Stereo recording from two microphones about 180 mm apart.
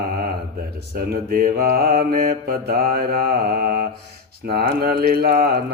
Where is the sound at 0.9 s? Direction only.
55° right (ahead or behind).